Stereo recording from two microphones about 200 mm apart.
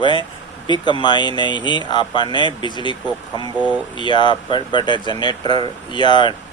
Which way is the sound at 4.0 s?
25° left (ahead or behind).